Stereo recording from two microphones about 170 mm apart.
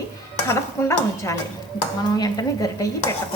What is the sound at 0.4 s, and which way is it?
Stir, 15° left (ahead or behind).